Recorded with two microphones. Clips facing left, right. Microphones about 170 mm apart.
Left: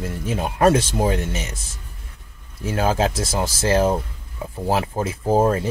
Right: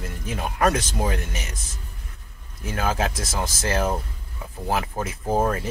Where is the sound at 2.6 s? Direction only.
30° left (ahead or behind).